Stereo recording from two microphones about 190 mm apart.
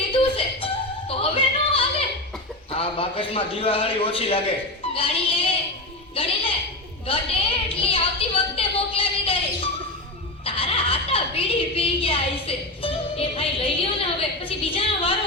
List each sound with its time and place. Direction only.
0.1 s music: 30° left (ahead or behind)
2.7 s a man's voice: 30° left (ahead or behind)
4.9 s a sound: 30° left (ahead or behind)
6.2 s a woman's voice: 30° left (ahead or behind)
7.1 s a sound: 30° left (ahead or behind)
10.4 s chuckle: 30° left (ahead or behind)